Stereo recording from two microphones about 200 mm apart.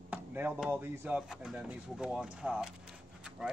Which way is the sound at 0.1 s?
10° right (ahead or behind).